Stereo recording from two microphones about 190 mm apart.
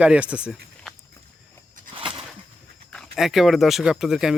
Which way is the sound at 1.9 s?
30° right (ahead or behind).